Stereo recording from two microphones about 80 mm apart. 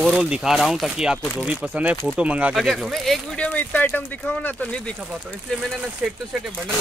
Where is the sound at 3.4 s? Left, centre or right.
Centre.